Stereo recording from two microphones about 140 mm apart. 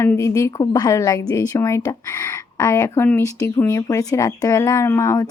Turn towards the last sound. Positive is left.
turn(degrees=20)  # may be behind; listen again after turning